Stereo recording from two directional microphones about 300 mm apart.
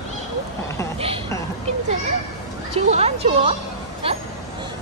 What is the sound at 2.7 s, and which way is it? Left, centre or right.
Speech, right.